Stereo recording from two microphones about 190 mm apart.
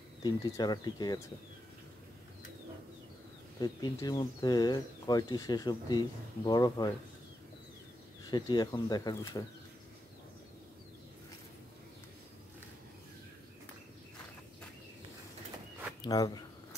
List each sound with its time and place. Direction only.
0.2 s speech: 20° left (ahead or behind)
3.5 s speech: 20° left (ahead or behind)
8.3 s speech: 20° left (ahead or behind)
16.0 s a sound: 20° left (ahead or behind)